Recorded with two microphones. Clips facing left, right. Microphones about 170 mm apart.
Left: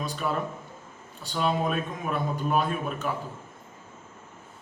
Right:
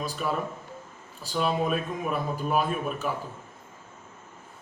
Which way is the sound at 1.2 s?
5° right (ahead or behind).